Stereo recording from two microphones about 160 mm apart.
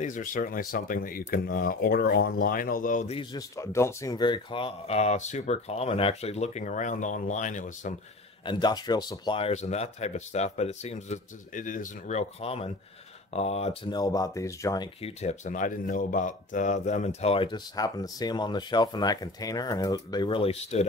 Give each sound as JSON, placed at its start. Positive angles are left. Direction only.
{"t": 0.0, "sound": "speech", "side_deg": 55}
{"t": 3.3, "sound": "speech", "side_deg": 20}
{"t": 8.5, "sound": "speech", "side_deg": 25}
{"t": 9.5, "sound": "speech", "side_deg": 45}
{"t": 13.9, "sound": "speech", "side_deg": 25}
{"t": 15.0, "sound": "speech", "side_deg": 40}